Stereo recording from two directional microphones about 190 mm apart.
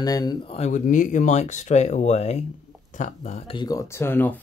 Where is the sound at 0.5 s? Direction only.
40° left (ahead or behind).